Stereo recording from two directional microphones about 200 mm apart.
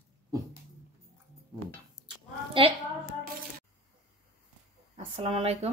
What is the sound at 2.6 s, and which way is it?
Speech, 25° right (ahead or behind).